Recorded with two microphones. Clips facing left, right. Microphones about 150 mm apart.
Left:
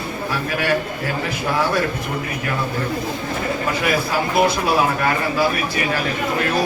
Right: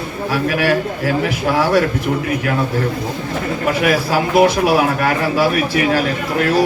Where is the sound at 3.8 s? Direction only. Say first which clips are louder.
Right 5 dB; 85° right.